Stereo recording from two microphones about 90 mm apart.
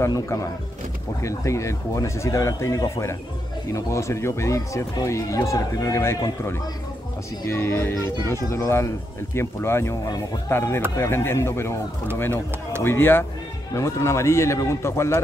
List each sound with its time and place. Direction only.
1.2 s speech: 35° left (ahead or behind)
12.8 s speech: 25° left (ahead or behind)